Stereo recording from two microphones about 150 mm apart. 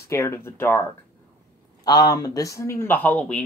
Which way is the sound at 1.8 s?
25° left (ahead or behind).